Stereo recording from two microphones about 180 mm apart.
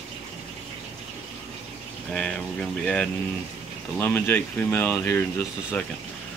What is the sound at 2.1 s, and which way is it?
Speech, 5° left (ahead or behind).